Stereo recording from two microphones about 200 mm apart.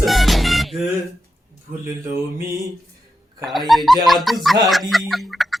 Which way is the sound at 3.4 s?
Centre (ahead or behind).